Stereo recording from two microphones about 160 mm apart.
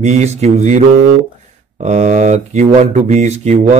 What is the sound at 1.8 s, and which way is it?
A man's voice, 50° right (ahead or behind).